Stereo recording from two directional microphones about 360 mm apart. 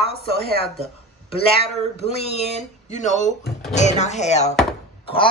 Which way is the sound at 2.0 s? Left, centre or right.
Centre.